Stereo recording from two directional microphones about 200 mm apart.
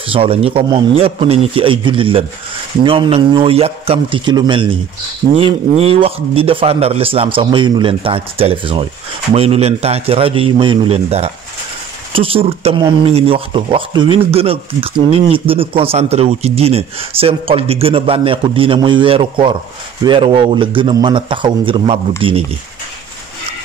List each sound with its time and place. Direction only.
0.1 s speech: 25° right (ahead or behind)